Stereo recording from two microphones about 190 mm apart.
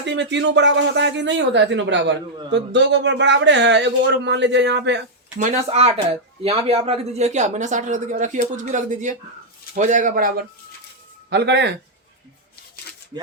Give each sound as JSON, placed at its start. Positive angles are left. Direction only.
{"t": 0.0, "sound": "speech", "side_deg": -70}
{"t": 5.4, "sound": "a man's voice", "side_deg": -35}
{"t": 11.3, "sound": "speech", "side_deg": -65}